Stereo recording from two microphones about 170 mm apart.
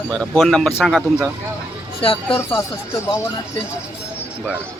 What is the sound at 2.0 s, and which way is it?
Speech, 35° left (ahead or behind).